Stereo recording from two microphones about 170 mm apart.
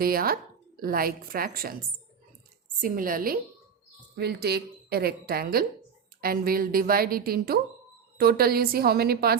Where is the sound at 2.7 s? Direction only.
55° right (ahead or behind).